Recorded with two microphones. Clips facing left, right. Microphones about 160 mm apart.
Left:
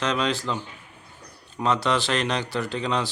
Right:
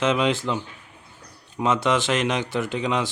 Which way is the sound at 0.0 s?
20° right (ahead or behind).